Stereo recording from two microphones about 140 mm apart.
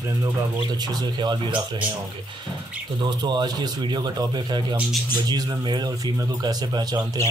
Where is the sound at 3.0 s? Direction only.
30° right (ahead or behind).